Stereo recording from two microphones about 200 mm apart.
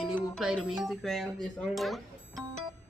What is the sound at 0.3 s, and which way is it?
Speech, centre (ahead or behind).